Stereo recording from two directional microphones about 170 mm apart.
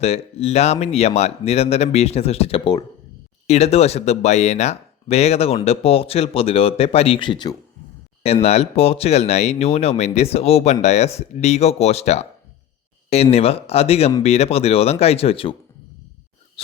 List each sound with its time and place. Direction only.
0.0 s speech: 40° left (ahead or behind)
8.2 s speech: 35° left (ahead or behind)
13.3 s speech: 35° left (ahead or behind)